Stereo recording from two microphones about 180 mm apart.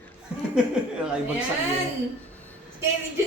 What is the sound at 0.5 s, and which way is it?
Speech, 5° right (ahead or behind).